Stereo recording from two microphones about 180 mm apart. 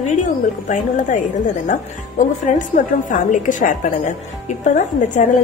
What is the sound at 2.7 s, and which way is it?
A woman's voice, 45° left (ahead or behind).